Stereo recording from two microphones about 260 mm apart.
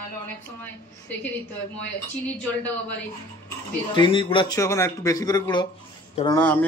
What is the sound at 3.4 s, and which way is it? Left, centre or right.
Speech, centre.